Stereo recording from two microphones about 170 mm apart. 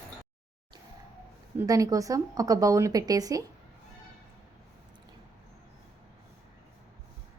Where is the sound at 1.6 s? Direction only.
20° right (ahead or behind).